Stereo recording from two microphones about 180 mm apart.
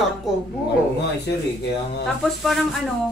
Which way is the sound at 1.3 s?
80° left.